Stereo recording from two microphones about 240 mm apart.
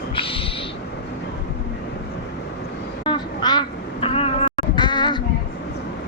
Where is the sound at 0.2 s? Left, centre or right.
Left.